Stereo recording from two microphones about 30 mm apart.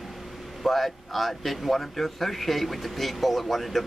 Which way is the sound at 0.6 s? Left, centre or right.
Centre.